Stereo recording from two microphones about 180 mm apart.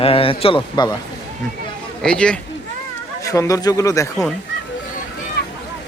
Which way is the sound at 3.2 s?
20° left (ahead or behind).